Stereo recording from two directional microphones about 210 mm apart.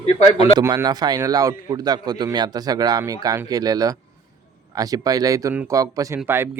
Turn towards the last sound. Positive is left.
turn(degrees=-10)  # may be behind; listen again after turning